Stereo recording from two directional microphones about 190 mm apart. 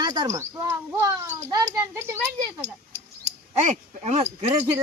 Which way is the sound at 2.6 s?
35° right (ahead or behind).